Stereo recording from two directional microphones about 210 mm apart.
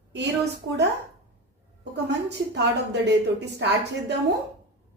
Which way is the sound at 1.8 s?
55° right (ahead or behind).